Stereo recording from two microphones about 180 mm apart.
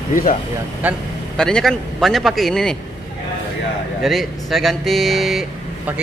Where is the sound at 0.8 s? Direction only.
5° right (ahead or behind).